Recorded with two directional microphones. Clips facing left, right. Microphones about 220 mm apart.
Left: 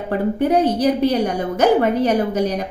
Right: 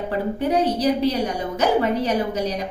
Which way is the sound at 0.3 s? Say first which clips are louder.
Left 4 dB; 50° left (ahead or behind).